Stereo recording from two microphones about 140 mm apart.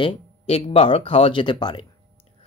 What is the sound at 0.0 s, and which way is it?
Speech, 45° left (ahead or behind).